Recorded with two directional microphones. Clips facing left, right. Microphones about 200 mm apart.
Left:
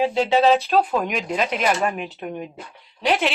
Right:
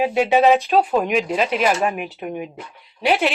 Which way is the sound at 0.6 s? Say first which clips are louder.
Right 2 dB; centre (ahead or behind).